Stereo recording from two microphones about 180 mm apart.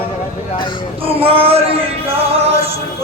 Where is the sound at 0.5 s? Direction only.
25° left (ahead or behind).